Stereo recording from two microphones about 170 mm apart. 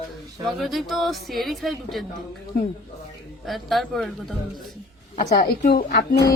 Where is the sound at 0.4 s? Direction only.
Centre (ahead or behind).